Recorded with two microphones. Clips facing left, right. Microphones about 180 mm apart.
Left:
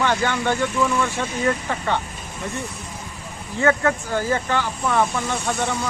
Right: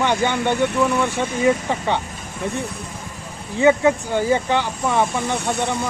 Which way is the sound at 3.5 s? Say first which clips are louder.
Right 4 dB; 15° right (ahead or behind).